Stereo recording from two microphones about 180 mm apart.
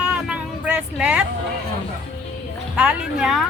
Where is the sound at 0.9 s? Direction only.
5° right (ahead or behind).